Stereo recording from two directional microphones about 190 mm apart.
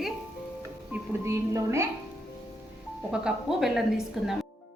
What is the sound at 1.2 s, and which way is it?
Speech, 15° right (ahead or behind).